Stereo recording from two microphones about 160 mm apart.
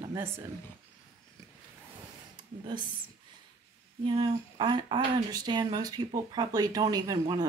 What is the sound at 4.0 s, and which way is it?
Speech, 30° right (ahead or behind).